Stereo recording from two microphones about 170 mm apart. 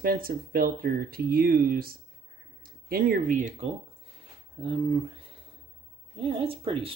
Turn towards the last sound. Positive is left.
turn(degrees=-30)  # may be behind; listen again after turning